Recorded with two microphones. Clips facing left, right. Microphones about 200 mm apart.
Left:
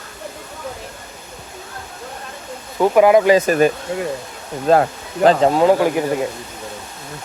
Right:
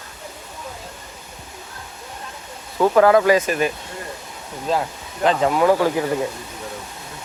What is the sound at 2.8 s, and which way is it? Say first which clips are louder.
Speech: left 2 dB; 15° left (ahead or behind).